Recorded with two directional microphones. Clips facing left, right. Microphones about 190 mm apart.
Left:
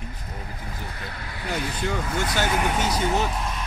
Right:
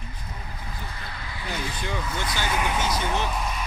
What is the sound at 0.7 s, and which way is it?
Speech, 55° left (ahead or behind).